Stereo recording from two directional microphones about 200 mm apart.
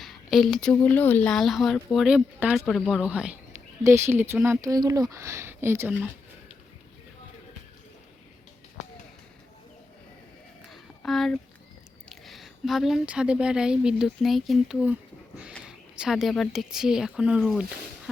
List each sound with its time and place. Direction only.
0.0 s speech: centre (ahead or behind)
10.7 s a sound: centre (ahead or behind)
12.0 s speech: centre (ahead or behind)